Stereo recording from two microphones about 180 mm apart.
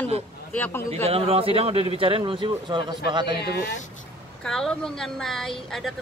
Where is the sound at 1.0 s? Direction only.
35° right (ahead or behind).